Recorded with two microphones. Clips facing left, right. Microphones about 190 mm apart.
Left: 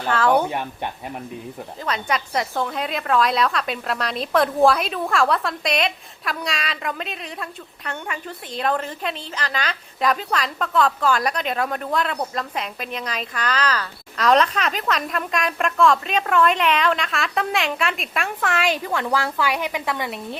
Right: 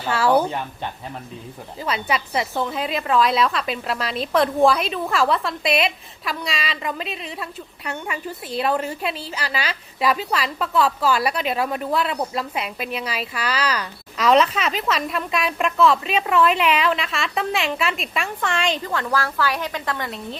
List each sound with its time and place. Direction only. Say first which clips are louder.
0.0 s speech: even; 5° right (ahead or behind)
1.8 s a woman's voice: right 1 dB; 5° right (ahead or behind); by 20.4 s 15° left (ahead or behind)